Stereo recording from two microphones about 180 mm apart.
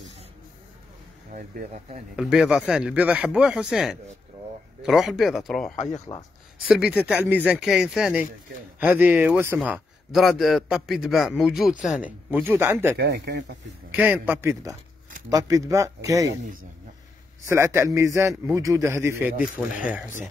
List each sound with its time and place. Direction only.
1.3 s speech: 45° right (ahead or behind)
2.1 s a man's voice: 5° right (ahead or behind)
6.7 s a man's voice: 5° right (ahead or behind)
9.6 s a man's voice: centre (ahead or behind)
12.9 s speech: 65° right (ahead or behind)
13.9 s speech: 10° right (ahead or behind)
17.5 s speech: 15° right (ahead or behind)